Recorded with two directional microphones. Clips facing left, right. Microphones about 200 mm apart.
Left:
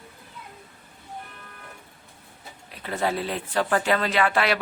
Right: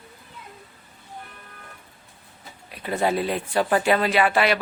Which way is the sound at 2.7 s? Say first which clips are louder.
Right 3 dB; 15° right (ahead or behind).